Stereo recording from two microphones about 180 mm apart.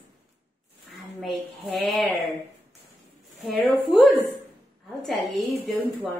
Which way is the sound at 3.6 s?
Centre (ahead or behind).